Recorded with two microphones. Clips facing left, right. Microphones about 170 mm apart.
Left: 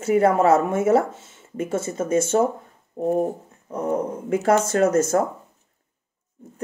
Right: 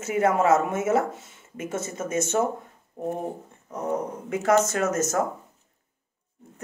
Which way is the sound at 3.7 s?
30° left (ahead or behind).